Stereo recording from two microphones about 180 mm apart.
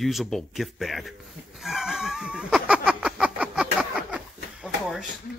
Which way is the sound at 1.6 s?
Centre (ahead or behind).